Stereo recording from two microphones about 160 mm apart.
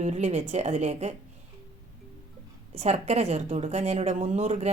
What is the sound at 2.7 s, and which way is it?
Speech, 40° right (ahead or behind).